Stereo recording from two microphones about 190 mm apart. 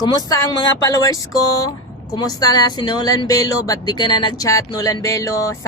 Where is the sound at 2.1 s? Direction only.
20° left (ahead or behind).